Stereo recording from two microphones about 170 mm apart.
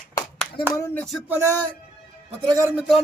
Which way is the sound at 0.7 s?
15° left (ahead or behind).